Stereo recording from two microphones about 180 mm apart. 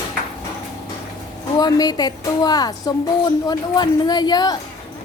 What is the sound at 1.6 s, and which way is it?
A woman's voice, 20° left (ahead or behind).